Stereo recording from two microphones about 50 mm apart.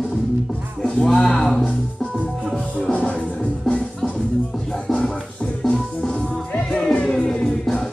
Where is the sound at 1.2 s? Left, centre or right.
Centre.